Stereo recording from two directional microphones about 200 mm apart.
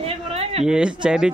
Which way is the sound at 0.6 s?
5° right (ahead or behind).